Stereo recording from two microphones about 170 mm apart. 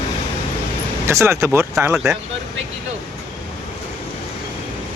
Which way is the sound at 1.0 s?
15° right (ahead or behind).